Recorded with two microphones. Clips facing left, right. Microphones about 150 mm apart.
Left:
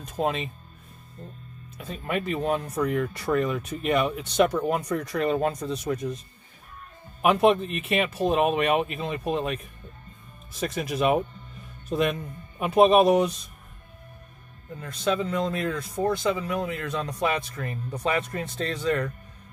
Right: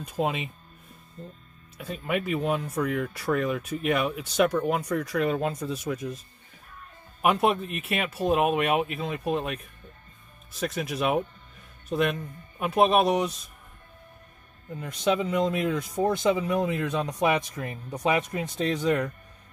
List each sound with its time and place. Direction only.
0.0 s speech: 5° right (ahead or behind)
1.8 s speech: 10° right (ahead or behind)
14.8 s speech: 15° right (ahead or behind)